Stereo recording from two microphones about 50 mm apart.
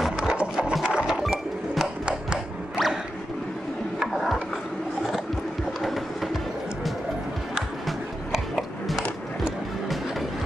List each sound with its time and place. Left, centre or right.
0.2 s wood: centre
0.8 s music: centre
5.8 s music: centre
7.8 s biting: centre